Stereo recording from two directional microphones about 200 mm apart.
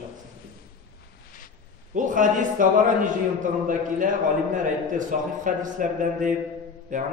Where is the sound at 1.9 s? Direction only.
40° right (ahead or behind).